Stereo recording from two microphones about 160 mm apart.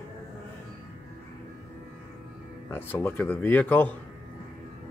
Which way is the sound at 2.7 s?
10° left (ahead or behind).